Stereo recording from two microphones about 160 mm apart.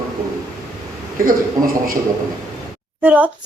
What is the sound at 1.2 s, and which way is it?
Speech, 60° right (ahead or behind).